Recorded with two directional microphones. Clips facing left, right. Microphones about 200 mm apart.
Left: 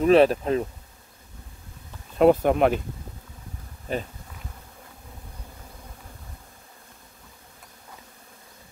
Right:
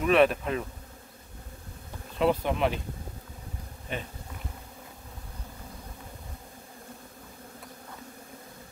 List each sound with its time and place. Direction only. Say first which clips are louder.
0.0 s bee: left 5 dB; 35° left (ahead or behind)
2.1 s bee: left 8 dB; 50° left (ahead or behind)
3.9 s bee: left 7 dB; 40° left (ahead or behind)